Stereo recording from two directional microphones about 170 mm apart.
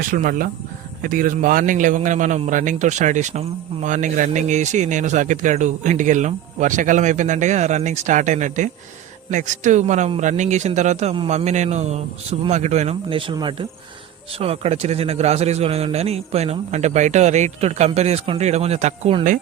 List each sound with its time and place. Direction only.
0.0 s a man's voice: 55° right (ahead or behind)